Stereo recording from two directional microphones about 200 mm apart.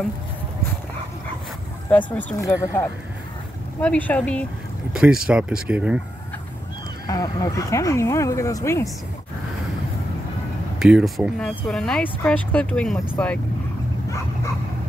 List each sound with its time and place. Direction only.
2.1 s speech: 10° left (ahead or behind); by 5.9 s 5° right (ahead or behind)
7.1 s speech: 20° left (ahead or behind)
10.8 s speech: 5° right (ahead or behind)